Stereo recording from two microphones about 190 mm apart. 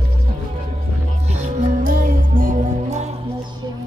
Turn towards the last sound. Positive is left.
turn(degrees=-35)  # may be behind; listen again after turning